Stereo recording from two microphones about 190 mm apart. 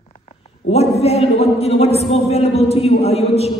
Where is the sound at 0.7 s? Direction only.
35° left (ahead or behind).